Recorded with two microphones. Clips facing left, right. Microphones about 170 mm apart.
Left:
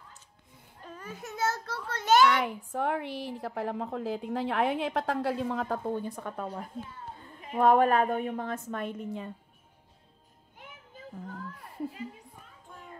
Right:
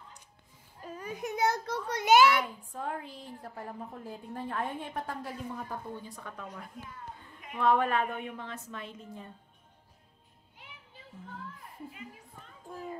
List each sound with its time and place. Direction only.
0.8 s a child's voice: 10° right (ahead or behind)
2.4 s a woman's voice: 70° left (ahead or behind); by 5.8 s 90° left
6.0 s a woman's voice: 50° left (ahead or behind)
6.4 s a sound: 30° left (ahead or behind)
7.6 s a woman's voice: 45° left (ahead or behind); by 9.3 s 70° left (ahead or behind)
10.6 s child singing: 45° left (ahead or behind)
11.9 s speech: 30° left (ahead or behind)